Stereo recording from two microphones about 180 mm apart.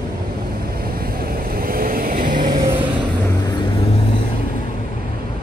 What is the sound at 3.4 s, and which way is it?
Vehicle, 25° left (ahead or behind).